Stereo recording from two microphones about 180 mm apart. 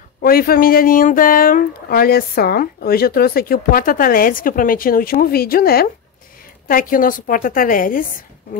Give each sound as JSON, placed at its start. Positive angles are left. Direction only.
{"t": 0.2, "sound": "speech", "side_deg": 55}